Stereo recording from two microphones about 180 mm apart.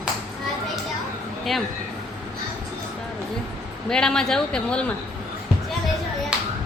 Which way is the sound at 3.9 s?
5° left (ahead or behind).